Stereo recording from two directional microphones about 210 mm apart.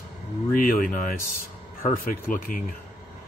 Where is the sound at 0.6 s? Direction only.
40° left (ahead or behind).